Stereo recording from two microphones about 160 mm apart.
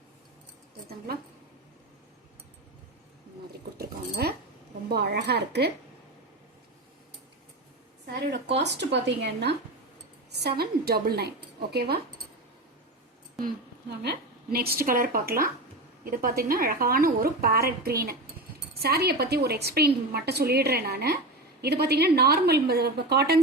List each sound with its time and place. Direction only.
0.9 s speech: 70° right (ahead or behind)
3.8 s dog: 85° right
4.9 s speech: 80° right
8.5 s speech: 90° right
10.6 s a woman's voice: 70° right (ahead or behind)
11.7 s a woman's voice: 85° right
14.0 s a woman's voice: 80° right